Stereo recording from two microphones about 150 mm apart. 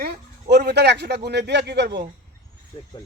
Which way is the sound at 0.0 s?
90° right.